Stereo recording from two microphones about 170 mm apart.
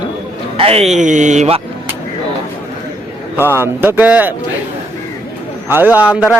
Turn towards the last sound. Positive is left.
turn(degrees=-5)  # may be behind; listen again after turning